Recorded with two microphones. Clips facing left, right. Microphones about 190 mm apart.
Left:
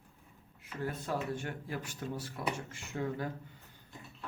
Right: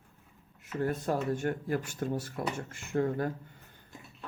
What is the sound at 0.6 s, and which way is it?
Speech, 50° right (ahead or behind).